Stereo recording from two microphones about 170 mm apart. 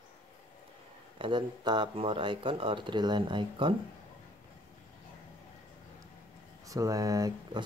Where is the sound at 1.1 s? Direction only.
30° right (ahead or behind).